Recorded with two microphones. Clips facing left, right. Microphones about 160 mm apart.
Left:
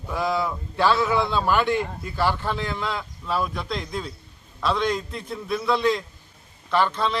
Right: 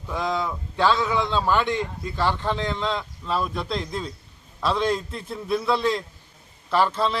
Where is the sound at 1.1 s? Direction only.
10° left (ahead or behind).